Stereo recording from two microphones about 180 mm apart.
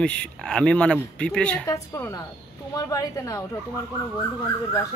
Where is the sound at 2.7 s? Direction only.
20° left (ahead or behind).